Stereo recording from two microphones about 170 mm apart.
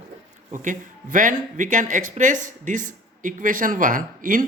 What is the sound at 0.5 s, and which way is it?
Speech, 50° right (ahead or behind).